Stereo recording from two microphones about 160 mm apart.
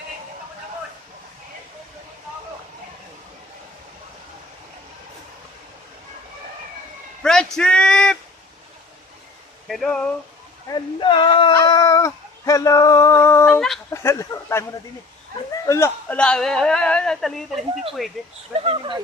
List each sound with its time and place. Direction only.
7.2 s a sound: 5° left (ahead or behind)
9.6 s speech: centre (ahead or behind)
10.7 s speech: 30° left (ahead or behind)
15.6 s a man's voice: 15° left (ahead or behind)
16.1 s speech: 5° left (ahead or behind)
18.6 s speech: 35° right (ahead or behind)